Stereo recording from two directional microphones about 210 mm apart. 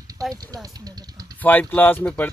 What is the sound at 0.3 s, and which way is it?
Speech, 15° right (ahead or behind).